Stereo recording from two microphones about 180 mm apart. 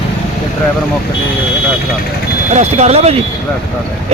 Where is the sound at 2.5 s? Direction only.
35° right (ahead or behind).